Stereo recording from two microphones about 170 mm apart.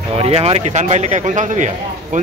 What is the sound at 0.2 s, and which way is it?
Speech, 35° right (ahead or behind).